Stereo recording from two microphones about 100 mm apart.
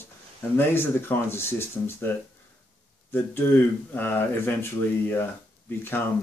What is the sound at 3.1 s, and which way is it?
Speech, 20° left (ahead or behind).